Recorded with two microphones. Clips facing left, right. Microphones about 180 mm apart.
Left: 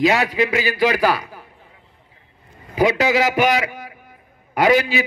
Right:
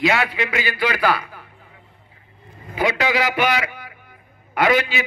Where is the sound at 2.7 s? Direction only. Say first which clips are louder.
Left 4 dB; 40° left (ahead or behind).